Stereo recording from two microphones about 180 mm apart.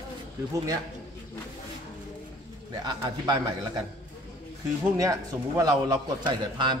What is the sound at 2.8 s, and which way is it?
Speech, 25° right (ahead or behind).